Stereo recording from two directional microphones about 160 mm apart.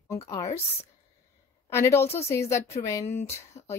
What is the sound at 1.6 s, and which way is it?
A woman's voice, 15° left (ahead or behind).